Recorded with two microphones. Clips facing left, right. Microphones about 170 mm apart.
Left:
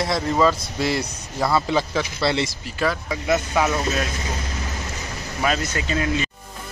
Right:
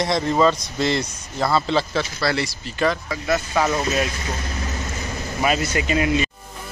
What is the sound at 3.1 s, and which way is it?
Speech, 15° left (ahead or behind).